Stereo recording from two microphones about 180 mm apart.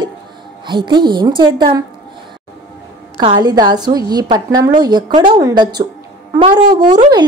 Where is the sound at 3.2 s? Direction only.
25° right (ahead or behind).